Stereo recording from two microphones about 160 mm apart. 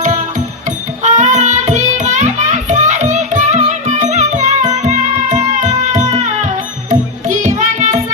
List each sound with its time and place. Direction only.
0.0 s music: 50° right (ahead or behind)